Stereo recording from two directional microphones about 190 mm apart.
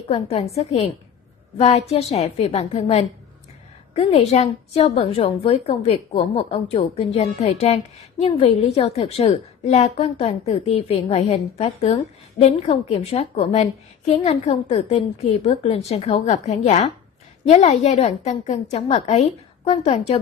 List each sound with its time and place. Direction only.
0.1 s a woman's voice: 35° left (ahead or behind)